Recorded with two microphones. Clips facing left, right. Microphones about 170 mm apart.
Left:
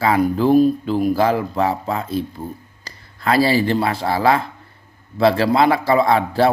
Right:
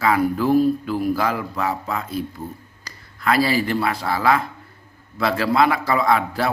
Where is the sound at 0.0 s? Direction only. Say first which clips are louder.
Left 3 dB; 25° left (ahead or behind).